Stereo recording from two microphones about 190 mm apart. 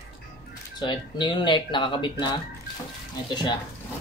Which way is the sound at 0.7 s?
25° left (ahead or behind).